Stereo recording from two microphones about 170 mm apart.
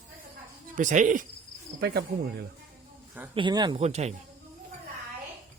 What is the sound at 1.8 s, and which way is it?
Speech, 70° right (ahead or behind).